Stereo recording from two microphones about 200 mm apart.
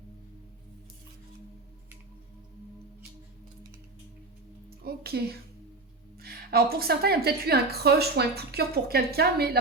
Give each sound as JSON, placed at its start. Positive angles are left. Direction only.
{"t": 4.8, "sound": "a woman's voice", "side_deg": -50}